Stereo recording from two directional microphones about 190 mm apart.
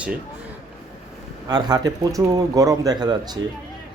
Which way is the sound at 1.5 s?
20° right (ahead or behind).